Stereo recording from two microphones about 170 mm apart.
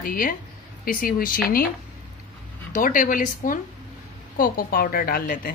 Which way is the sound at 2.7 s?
50° left (ahead or behind).